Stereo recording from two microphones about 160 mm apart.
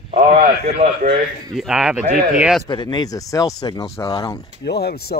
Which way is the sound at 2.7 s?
25° left (ahead or behind).